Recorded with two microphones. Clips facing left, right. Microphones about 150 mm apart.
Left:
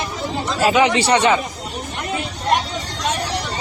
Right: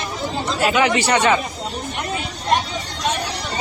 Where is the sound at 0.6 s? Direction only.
30° left (ahead or behind).